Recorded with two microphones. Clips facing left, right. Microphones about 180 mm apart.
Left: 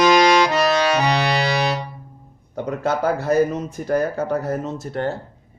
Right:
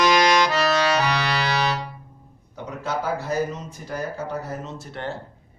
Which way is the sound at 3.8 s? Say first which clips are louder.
Left 9 dB; 55° left (ahead or behind).